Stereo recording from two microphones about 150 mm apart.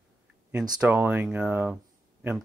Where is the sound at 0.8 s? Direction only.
10° right (ahead or behind).